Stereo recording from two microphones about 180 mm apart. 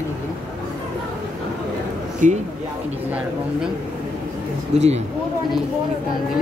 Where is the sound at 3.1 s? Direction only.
5° right (ahead or behind).